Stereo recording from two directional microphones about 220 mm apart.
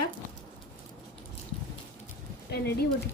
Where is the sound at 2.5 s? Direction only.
45° left (ahead or behind).